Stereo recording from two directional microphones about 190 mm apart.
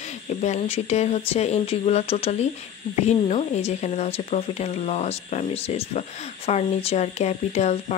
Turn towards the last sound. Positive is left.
turn(degrees=35)  # may be behind; listen again after turning